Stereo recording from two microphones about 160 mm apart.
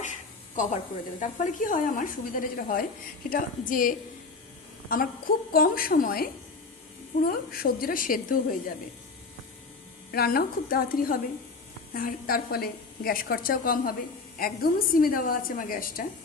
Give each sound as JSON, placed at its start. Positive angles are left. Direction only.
{"t": 0.5, "sound": "a woman's voice", "side_deg": 55}
{"t": 7.3, "sound": "a woman's voice", "side_deg": 65}
{"t": 10.1, "sound": "a woman's voice", "side_deg": 70}